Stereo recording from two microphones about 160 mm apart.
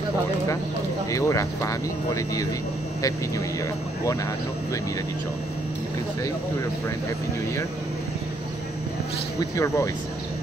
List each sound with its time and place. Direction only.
1.1 s speech: 20° left (ahead or behind)
9.4 s speech: 20° left (ahead or behind)